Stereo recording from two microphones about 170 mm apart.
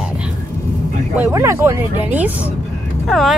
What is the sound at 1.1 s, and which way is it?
Speech, 15° right (ahead or behind).